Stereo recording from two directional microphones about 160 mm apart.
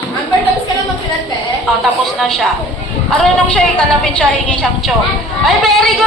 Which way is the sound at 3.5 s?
10° left (ahead or behind).